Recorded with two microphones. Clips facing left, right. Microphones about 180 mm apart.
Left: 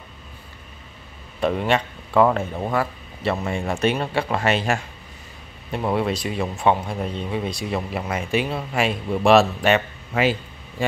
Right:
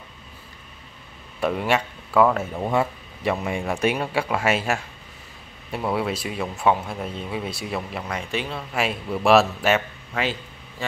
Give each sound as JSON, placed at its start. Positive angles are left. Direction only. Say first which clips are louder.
{"t": 1.4, "sound": "speech", "louder": "left 2 dB", "side_deg": -5}
{"t": 2.7, "sound": "a sound", "louder": "right 4 dB", "side_deg": -25}
{"t": 3.4, "sound": "speech", "louder": "left 2 dB", "side_deg": -10}
{"t": 5.9, "sound": "speech", "louder": "left 3 dB", "side_deg": -5}
{"t": 8.7, "sound": "speech", "louder": "left 2 dB", "side_deg": -5}